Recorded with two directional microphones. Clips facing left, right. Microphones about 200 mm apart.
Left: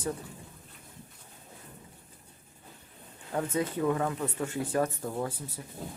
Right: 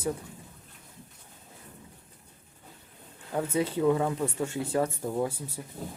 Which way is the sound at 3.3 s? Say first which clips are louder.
Right 2 dB; 10° right (ahead or behind).